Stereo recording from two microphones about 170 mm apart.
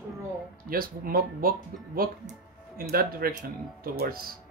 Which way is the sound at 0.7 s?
60° right (ahead or behind).